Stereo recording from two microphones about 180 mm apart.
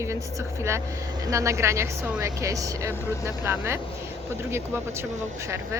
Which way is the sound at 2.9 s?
15° left (ahead or behind).